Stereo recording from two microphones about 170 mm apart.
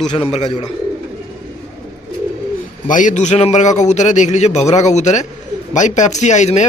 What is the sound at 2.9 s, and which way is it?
Speech, 50° left (ahead or behind).